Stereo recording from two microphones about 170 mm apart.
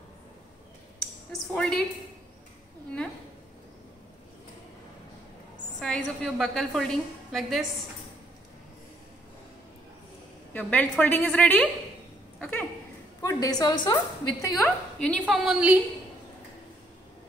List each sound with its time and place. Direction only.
1.5 s a woman's voice: 5° left (ahead or behind)
5.8 s a woman's voice: 5° left (ahead or behind)
10.5 s a woman's voice: 5° left (ahead or behind)
12.4 s a sound: 10° left (ahead or behind)
13.2 s a woman's voice: 20° left (ahead or behind)
14.4 s a woman's voice: 10° left (ahead or behind)
15.2 s a woman's voice: 5° right (ahead or behind)